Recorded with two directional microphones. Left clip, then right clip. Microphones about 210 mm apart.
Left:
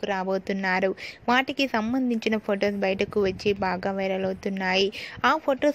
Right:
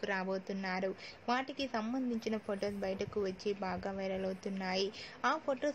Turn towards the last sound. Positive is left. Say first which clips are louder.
# left 12 dB
turn(degrees=35)  # may be behind; listen again after turning